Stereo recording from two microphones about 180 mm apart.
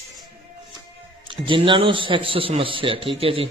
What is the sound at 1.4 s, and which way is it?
A man's voice, 25° right (ahead or behind).